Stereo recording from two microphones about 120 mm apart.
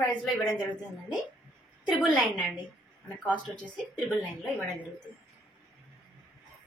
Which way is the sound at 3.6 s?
10° left (ahead or behind).